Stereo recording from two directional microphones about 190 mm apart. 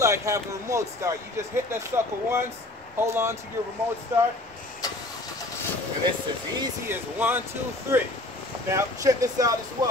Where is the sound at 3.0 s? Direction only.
15° right (ahead or behind).